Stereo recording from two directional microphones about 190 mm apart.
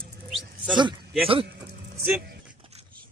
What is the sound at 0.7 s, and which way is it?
Speech, 25° right (ahead or behind).